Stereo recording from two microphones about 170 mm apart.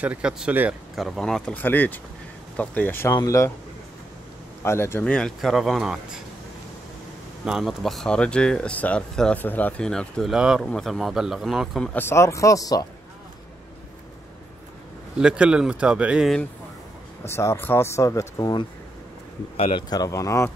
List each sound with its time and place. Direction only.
0.0 s speech: 5° right (ahead or behind); by 3.5 s 20° left (ahead or behind)
4.6 s speech: 15° left (ahead or behind); by 6.2 s centre (ahead or behind)
7.4 s speech: centre (ahead or behind); by 12.8 s 20° left (ahead or behind)
15.1 s speech: 5° right (ahead or behind)
17.2 s speech: 15° left (ahead or behind)
19.5 s a man's voice: 35° left (ahead or behind)
19.9 s speech: 20° left (ahead or behind)